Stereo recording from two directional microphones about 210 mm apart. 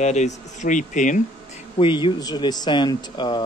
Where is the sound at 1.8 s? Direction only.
25° left (ahead or behind).